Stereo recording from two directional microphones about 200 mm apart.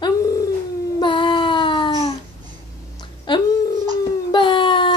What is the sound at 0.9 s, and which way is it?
Child singing, 25° left (ahead or behind).